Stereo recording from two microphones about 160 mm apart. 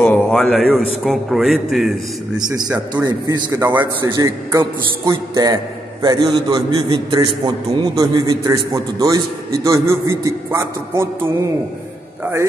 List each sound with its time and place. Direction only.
0.0 s a man's voice: 5° left (ahead or behind)
2.4 s a man's voice: 25° right (ahead or behind)
3.5 s a man's voice: 15° right (ahead or behind)